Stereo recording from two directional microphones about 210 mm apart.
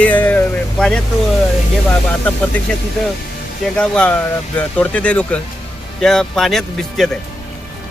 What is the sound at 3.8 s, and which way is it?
Speech, 5° left (ahead or behind).